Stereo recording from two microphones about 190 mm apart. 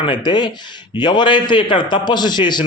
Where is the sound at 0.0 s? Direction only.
25° left (ahead or behind).